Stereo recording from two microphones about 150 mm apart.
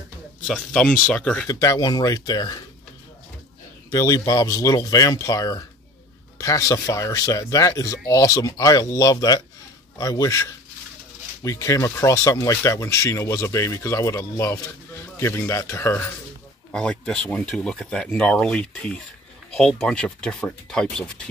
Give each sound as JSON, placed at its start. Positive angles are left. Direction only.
{"t": 0.5, "sound": "speech", "side_deg": 5}
{"t": 1.5, "sound": "speech", "side_deg": 25}
{"t": 3.9, "sound": "speech", "side_deg": 20}